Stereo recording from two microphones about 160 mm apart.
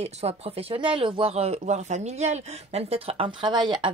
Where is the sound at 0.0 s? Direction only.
40° right (ahead or behind).